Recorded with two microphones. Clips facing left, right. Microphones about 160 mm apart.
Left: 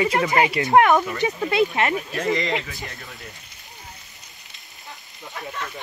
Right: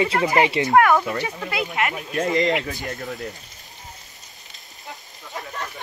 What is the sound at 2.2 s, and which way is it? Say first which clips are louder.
Speech: right 5 dB; 45° right (ahead or behind).